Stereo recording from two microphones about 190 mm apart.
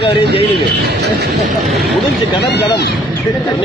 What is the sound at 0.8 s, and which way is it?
Speech, 55° right (ahead or behind).